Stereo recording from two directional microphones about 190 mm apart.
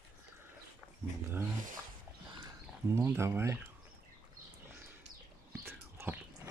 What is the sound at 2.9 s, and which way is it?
Speech, 15° right (ahead or behind).